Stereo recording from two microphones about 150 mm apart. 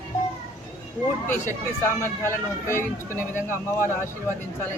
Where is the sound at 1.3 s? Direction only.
15° left (ahead or behind).